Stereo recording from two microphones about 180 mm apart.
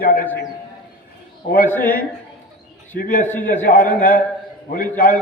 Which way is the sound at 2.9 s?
55° left (ahead or behind).